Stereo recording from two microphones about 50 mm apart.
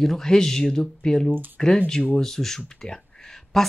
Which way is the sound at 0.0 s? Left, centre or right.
Centre.